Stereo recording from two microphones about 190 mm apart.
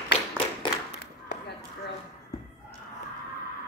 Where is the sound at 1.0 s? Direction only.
60° left (ahead or behind).